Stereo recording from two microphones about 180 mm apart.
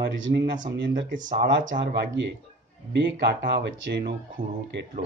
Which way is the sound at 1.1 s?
45° right (ahead or behind).